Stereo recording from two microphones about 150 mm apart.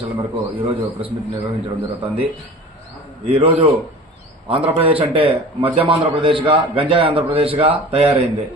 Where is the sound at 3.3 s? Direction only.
35° right (ahead or behind).